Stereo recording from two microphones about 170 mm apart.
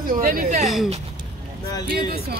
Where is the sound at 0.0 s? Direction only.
55° right (ahead or behind).